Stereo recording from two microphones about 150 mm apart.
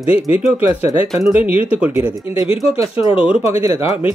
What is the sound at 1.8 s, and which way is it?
Speech, 10° right (ahead or behind).